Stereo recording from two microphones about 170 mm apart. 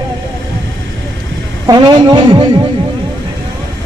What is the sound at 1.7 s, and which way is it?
Speech, 25° right (ahead or behind).